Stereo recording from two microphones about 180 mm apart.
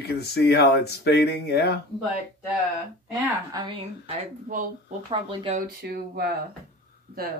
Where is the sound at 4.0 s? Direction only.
30° right (ahead or behind).